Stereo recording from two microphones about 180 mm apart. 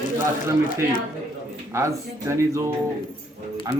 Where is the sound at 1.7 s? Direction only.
15° right (ahead or behind).